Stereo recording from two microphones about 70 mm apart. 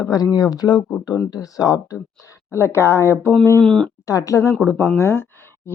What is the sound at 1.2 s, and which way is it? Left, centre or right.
Speech, left.